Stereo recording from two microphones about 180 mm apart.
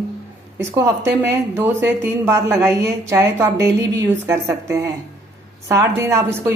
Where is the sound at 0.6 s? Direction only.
15° right (ahead or behind).